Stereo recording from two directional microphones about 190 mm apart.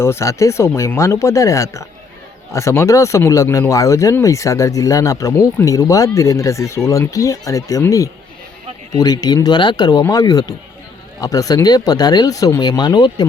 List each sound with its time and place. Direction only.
0.0 s speech: 15° left (ahead or behind)